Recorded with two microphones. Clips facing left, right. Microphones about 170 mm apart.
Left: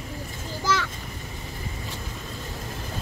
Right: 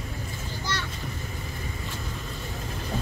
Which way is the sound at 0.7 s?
90° left.